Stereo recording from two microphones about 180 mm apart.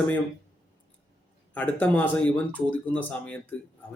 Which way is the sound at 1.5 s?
10° left (ahead or behind).